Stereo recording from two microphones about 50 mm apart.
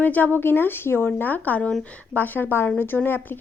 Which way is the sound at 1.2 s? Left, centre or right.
Left.